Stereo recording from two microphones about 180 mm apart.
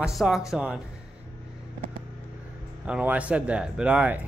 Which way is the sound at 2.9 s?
5° right (ahead or behind).